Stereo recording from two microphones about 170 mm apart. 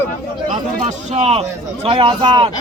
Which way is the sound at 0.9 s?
35° right (ahead or behind).